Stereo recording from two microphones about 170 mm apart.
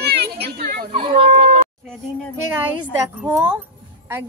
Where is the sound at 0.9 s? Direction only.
30° right (ahead or behind).